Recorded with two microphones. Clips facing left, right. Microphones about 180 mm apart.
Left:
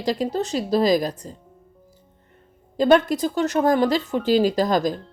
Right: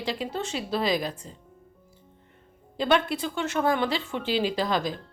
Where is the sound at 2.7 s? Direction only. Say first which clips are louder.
Left 7 dB; 40° left (ahead or behind).